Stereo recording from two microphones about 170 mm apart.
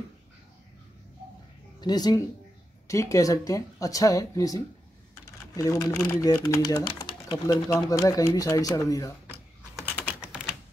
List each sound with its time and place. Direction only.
1.8 s speech: 25° left (ahead or behind)